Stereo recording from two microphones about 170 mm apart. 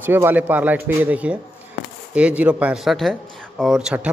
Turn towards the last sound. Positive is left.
turn(degrees=-5)  # may be behind; listen again after turning